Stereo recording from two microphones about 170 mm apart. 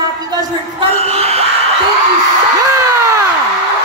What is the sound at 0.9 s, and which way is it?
Speech, 40° right (ahead or behind).